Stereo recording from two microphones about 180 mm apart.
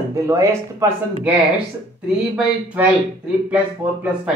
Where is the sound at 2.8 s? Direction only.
10° right (ahead or behind).